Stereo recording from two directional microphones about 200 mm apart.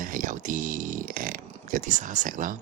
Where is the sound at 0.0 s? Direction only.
40° right (ahead or behind).